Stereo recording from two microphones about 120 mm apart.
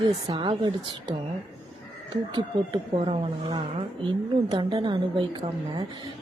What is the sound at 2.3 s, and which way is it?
A woman's voice, 40° right (ahead or behind).